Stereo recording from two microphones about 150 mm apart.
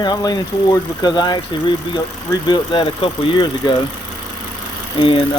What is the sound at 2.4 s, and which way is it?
Speech, 30° left (ahead or behind).